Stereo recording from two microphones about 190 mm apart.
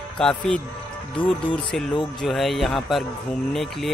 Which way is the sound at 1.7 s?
Centre (ahead or behind).